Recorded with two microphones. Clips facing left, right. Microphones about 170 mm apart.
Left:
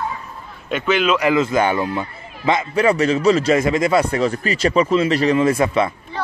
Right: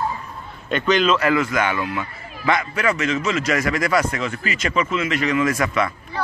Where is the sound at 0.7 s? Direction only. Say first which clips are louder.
Even; 5° left (ahead or behind).